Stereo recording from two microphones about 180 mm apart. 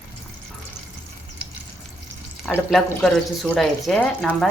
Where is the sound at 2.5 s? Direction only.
Centre (ahead or behind).